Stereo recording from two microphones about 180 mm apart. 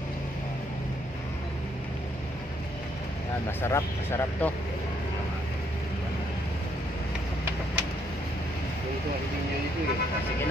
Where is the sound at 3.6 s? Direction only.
15° left (ahead or behind).